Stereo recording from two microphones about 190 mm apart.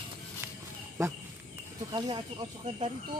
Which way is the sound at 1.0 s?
15° right (ahead or behind).